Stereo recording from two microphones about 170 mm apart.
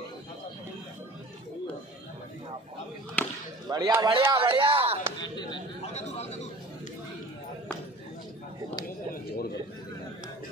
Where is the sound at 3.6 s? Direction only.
25° right (ahead or behind).